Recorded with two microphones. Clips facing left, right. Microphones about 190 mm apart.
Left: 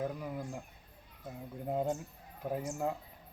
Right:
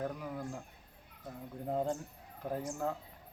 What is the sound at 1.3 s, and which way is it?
Speech, 5° left (ahead or behind).